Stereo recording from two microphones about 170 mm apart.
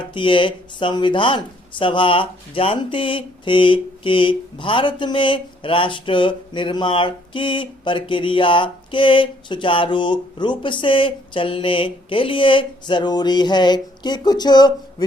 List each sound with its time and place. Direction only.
0.0 s speech: 30° left (ahead or behind)